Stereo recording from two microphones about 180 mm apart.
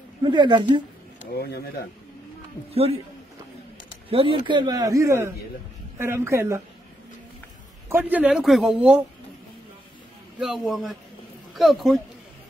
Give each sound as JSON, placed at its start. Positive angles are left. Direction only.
{"t": 0.2, "sound": "speech", "side_deg": -25}
{"t": 2.7, "sound": "a man's voice", "side_deg": -35}
{"t": 4.1, "sound": "speech", "side_deg": -30}
{"t": 7.9, "sound": "speech", "side_deg": -10}
{"t": 10.4, "sound": "a man's voice", "side_deg": 0}